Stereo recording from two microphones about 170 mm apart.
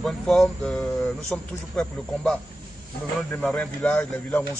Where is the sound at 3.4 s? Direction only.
5° left (ahead or behind).